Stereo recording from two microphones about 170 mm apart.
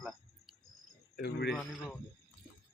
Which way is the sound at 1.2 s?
90° left.